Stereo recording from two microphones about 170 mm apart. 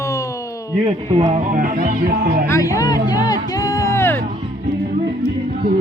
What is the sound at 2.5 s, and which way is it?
Music, 20° left (ahead or behind).